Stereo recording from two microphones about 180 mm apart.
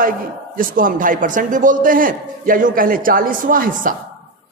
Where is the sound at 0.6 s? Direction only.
50° right (ahead or behind).